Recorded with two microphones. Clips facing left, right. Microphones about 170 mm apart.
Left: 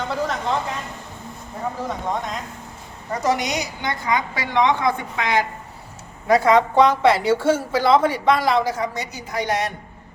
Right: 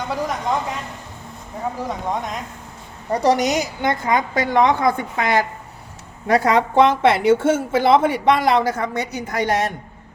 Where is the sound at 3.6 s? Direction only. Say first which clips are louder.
Right 5 dB; 50° right (ahead or behind).